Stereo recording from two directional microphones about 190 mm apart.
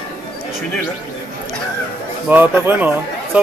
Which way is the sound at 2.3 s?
10° right (ahead or behind).